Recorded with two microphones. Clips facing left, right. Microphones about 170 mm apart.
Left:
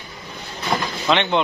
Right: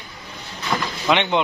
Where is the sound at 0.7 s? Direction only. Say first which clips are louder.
Left 1 dB; 40° left (ahead or behind).